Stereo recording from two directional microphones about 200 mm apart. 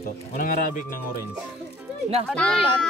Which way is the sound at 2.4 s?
5° left (ahead or behind).